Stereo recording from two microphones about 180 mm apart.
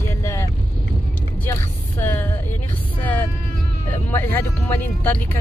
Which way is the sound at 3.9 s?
10° left (ahead or behind).